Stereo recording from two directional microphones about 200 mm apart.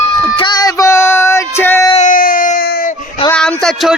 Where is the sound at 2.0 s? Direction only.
40° left (ahead or behind).